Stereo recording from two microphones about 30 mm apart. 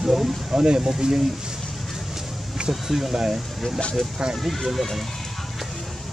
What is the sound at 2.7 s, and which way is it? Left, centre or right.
Speech, centre.